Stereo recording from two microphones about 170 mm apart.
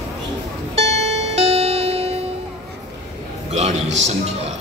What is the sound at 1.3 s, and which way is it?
Music, 35° right (ahead or behind).